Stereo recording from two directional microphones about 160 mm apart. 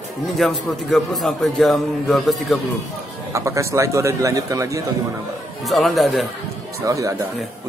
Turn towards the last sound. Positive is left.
turn(degrees=-20)  # may be behind; listen again after turning